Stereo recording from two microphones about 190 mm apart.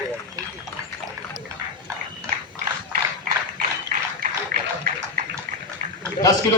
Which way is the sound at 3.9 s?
45° right (ahead or behind).